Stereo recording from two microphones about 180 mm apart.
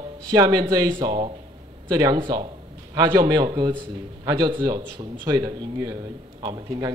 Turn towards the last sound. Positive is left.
turn(degrees=-20)  # may be behind; listen again after turning